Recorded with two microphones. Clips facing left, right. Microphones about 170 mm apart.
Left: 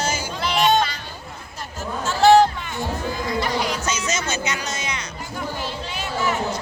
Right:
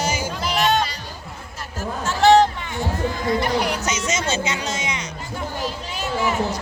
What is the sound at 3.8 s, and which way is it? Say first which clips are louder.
Speech: right 2 dB; 20° right (ahead or behind).